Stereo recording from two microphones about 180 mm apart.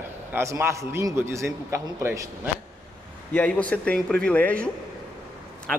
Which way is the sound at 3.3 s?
10° left (ahead or behind).